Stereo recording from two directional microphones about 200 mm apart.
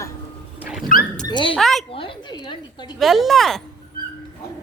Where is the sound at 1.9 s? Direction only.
25° left (ahead or behind).